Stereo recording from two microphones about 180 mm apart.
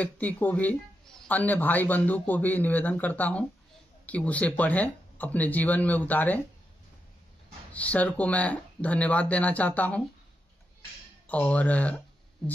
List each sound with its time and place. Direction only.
0.0 s speech: 10° left (ahead or behind)
7.7 s speech: 5° left (ahead or behind)
11.2 s speech: 10° left (ahead or behind)